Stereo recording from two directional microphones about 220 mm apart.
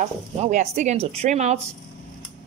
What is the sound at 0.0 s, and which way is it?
Speech, 35° right (ahead or behind).